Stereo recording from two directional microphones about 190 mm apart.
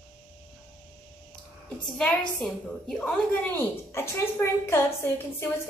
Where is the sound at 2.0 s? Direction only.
5° left (ahead or behind).